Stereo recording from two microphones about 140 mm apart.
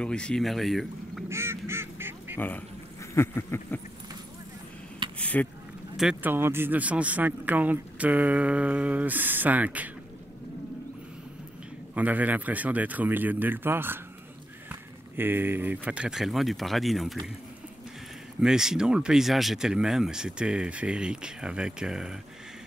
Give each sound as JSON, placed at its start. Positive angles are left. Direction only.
{"t": 0.0, "sound": "speech", "side_deg": 5}
{"t": 1.3, "sound": "goose", "side_deg": -20}
{"t": 2.3, "sound": "speech", "side_deg": 15}
{"t": 3.2, "sound": "a sound", "side_deg": 20}
{"t": 5.2, "sound": "a sound", "side_deg": 10}
{"t": 5.9, "sound": "speech", "side_deg": -5}
{"t": 6.3, "sound": "a man's voice", "side_deg": -15}
{"t": 11.9, "sound": "a man's voice", "side_deg": -10}
{"t": 15.1, "sound": "speech", "side_deg": -15}
{"t": 18.4, "sound": "speech", "side_deg": -5}